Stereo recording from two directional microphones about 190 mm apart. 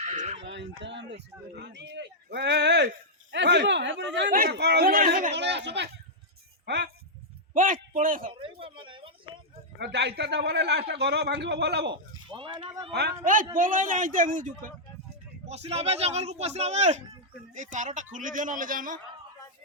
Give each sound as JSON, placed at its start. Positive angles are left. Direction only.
{"t": 0.0, "sound": "a sound", "side_deg": -40}
{"t": 0.3, "sound": "speech", "side_deg": -70}
{"t": 4.3, "sound": "speech", "side_deg": -50}
{"t": 7.5, "sound": "a man's voice", "side_deg": -45}
{"t": 8.3, "sound": "a sound", "side_deg": -30}
{"t": 9.7, "sound": "speech", "side_deg": -60}
{"t": 12.3, "sound": "speech", "side_deg": -25}
{"t": 13.6, "sound": "speech", "side_deg": -45}
{"t": 15.4, "sound": "speech", "side_deg": -35}